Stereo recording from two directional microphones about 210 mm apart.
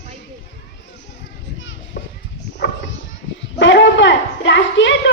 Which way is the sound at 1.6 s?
60° left (ahead or behind).